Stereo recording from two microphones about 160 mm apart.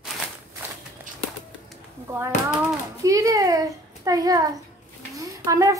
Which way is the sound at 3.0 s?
20° right (ahead or behind).